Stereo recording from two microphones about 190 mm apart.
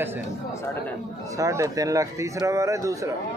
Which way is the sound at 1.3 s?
15° right (ahead or behind).